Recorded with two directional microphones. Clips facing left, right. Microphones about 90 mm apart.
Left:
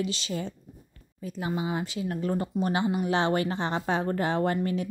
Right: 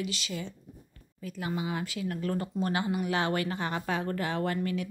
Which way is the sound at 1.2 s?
25° left (ahead or behind).